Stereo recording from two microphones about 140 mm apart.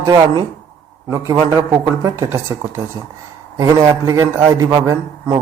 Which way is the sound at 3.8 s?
30° right (ahead or behind).